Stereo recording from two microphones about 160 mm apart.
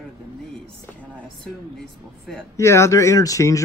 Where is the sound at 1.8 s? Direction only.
Centre (ahead or behind).